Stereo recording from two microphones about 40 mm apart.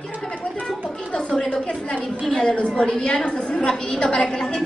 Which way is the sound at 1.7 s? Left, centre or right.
Left.